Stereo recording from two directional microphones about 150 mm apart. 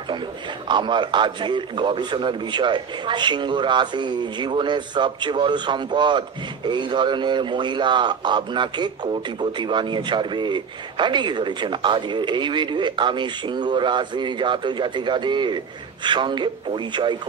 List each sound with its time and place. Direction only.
0.7 s a man's voice: 30° right (ahead or behind)